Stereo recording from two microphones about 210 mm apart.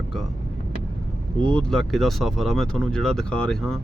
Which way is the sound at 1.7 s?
Centre (ahead or behind).